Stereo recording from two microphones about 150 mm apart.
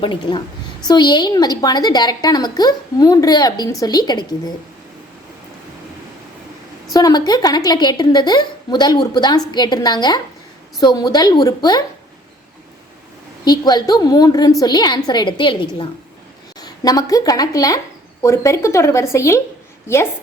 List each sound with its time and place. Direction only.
0.0 s a woman's voice: 30° left (ahead or behind)
6.9 s a woman's voice: 25° left (ahead or behind)
13.4 s a woman's voice: 30° left (ahead or behind)